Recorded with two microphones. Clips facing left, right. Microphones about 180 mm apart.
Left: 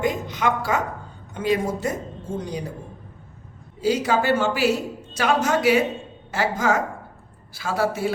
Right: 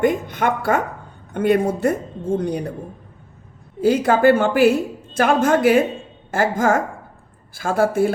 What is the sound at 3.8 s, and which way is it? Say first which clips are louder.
A woman's voice: right 5 dB; 55° right (ahead or behind).